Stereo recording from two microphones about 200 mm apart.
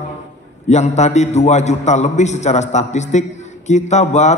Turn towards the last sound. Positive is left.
turn(degrees=35)  # may be behind; listen again after turning